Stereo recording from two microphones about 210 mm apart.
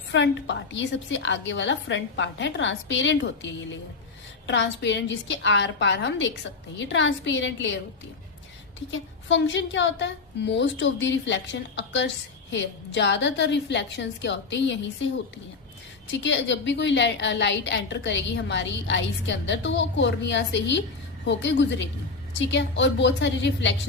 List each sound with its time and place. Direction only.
0.1 s a woman's voice: 60° left (ahead or behind)
8.9 s a woman's voice: 60° left (ahead or behind)
16.2 s a woman's voice: 60° left (ahead or behind)